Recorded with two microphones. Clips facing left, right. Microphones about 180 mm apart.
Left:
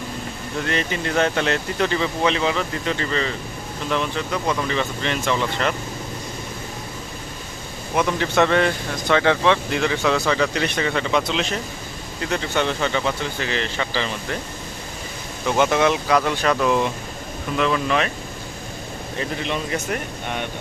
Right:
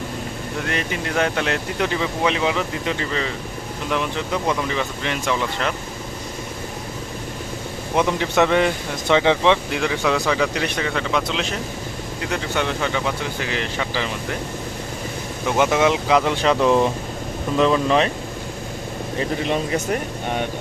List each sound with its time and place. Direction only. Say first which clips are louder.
0.7 s speech: left 2 dB; 5° right (ahead or behind)
7.9 s speech: right 1 dB; 15° right (ahead or behind)
9.7 s speech: even; 5° right (ahead or behind)
15.4 s speech: even; 10° right (ahead or behind); by 18.1 s 30° right (ahead or behind)